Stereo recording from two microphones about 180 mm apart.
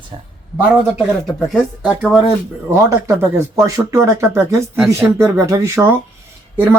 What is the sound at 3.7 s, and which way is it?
Speech, 15° right (ahead or behind).